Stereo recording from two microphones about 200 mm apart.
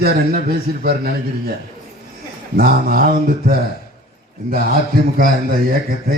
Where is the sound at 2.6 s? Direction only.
50° right (ahead or behind).